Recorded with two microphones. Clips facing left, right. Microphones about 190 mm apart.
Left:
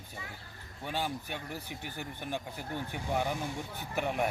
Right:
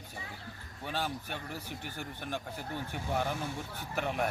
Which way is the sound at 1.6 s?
45° right (ahead or behind).